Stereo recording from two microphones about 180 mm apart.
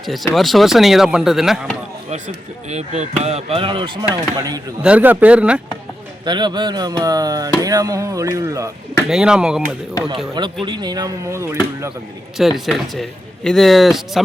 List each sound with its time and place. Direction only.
0.0 s speech: centre (ahead or behind)
2.0 s speech: 40° right (ahead or behind); by 4.6 s 20° right (ahead or behind)
4.8 s speech: 5° right (ahead or behind)
6.2 s speech: 25° right (ahead or behind)
9.0 s speech: 5° right (ahead or behind)
10.3 s speech: 25° right (ahead or behind)
12.4 s speech: centre (ahead or behind)